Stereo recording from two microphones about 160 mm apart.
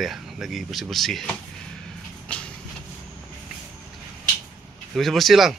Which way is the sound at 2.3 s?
5° left (ahead or behind).